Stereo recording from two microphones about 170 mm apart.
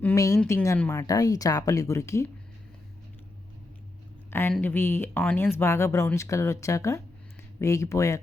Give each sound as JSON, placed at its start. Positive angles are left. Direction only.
{"t": 0.0, "sound": "speech", "side_deg": 15}
{"t": 4.3, "sound": "speech", "side_deg": 15}